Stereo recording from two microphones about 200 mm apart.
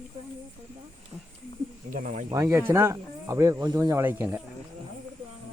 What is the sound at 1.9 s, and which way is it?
Speech, 40° right (ahead or behind).